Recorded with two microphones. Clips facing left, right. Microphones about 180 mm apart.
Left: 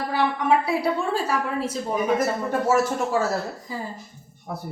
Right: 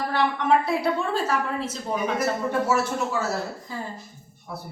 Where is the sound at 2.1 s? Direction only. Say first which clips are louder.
Left 1 dB; 45° left (ahead or behind).